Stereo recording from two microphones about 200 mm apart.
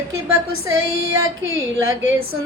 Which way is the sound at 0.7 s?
85° right.